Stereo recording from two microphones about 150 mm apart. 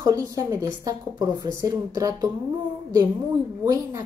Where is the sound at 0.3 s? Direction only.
20° right (ahead or behind).